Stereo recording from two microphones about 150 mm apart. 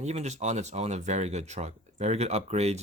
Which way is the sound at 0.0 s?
45° right (ahead or behind).